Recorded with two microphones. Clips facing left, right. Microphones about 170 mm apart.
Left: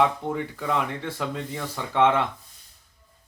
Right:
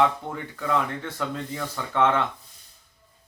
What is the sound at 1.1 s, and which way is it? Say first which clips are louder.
Speech: even; 5° left (ahead or behind).